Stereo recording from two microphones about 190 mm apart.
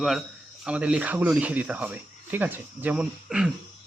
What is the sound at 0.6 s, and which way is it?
A man's voice, 5° right (ahead or behind).